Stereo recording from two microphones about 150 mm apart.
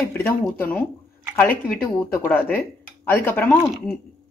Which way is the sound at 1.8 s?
15° left (ahead or behind).